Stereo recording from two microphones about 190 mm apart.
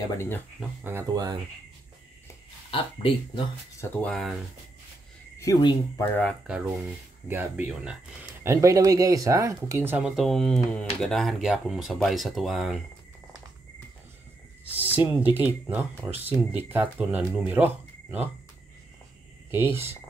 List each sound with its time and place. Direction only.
0.1 s speech: 15° left (ahead or behind)
0.8 s speech: 15° right (ahead or behind)
2.7 s speech: 30° left (ahead or behind)
3.8 s speech: 5° left (ahead or behind)
5.4 s speech: 20° left (ahead or behind)
7.2 s speech: 10° right (ahead or behind)
14.6 s speech: 10° right (ahead or behind)
19.5 s speech: 10° right (ahead or behind)